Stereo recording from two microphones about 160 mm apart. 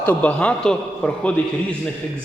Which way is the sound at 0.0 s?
10° left (ahead or behind).